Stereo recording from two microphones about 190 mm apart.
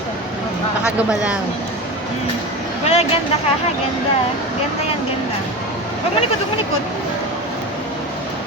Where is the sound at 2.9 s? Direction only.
35° left (ahead or behind).